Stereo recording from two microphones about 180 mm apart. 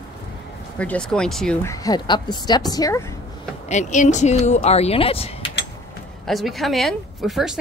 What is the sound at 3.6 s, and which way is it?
Speech, 40° left (ahead or behind).